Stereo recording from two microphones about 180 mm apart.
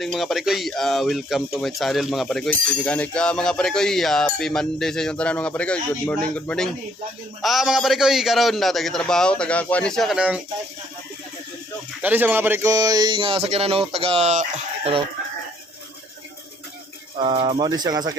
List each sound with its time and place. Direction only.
0.0 s speech: centre (ahead or behind)
12.0 s speech: 10° right (ahead or behind); by 14.4 s 40° right (ahead or behind)
17.2 s speech: 30° right (ahead or behind)